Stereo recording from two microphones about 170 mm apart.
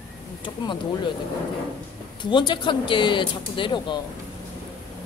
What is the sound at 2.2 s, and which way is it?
Speech, 25° left (ahead or behind).